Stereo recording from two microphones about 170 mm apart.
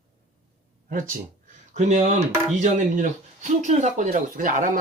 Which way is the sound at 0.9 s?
50° right (ahead or behind).